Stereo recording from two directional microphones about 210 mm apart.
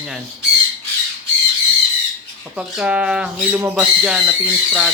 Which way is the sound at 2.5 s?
5° right (ahead or behind).